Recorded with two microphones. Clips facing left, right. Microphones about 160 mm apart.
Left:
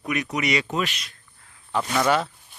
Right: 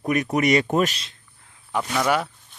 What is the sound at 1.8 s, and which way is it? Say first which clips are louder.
Speech: left 1 dB; 5° right (ahead or behind).